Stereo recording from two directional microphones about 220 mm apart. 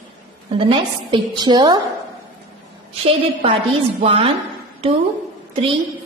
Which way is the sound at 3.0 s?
25° right (ahead or behind).